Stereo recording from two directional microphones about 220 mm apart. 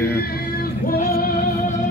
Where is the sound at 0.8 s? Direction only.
40° left (ahead or behind).